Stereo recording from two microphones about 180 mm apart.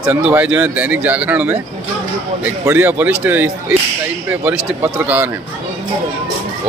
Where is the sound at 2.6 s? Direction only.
15° right (ahead or behind).